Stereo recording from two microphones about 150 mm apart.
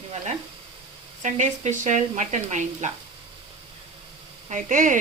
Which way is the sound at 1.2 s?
55° right (ahead or behind).